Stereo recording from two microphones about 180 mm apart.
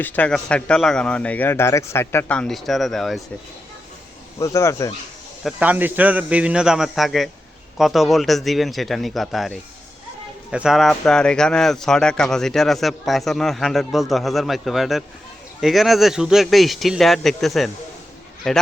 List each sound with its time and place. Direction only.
0.0 s speech: 5° left (ahead or behind)
4.4 s speech: 15° left (ahead or behind)
5.4 s speech: 5° right (ahead or behind)